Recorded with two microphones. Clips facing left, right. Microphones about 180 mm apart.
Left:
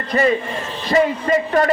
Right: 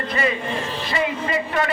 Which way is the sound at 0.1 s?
40° left (ahead or behind).